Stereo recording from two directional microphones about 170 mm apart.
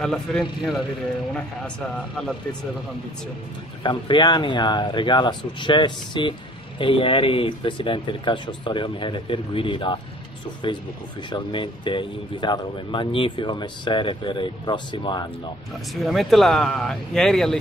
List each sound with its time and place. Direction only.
0.0 s speech: 5° left (ahead or behind)
2.0 s speech: 5° left (ahead or behind)
3.8 s speech: 25° left (ahead or behind)
15.9 s speech: centre (ahead or behind)